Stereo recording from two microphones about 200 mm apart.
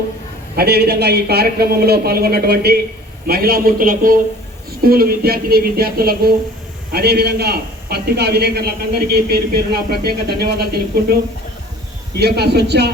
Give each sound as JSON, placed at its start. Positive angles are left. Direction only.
{"t": 0.5, "sound": "a man's voice", "side_deg": -50}